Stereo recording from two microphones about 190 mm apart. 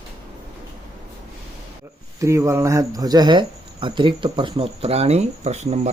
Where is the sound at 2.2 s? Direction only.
15° right (ahead or behind).